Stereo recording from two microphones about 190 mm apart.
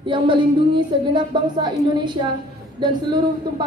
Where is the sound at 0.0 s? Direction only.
25° right (ahead or behind).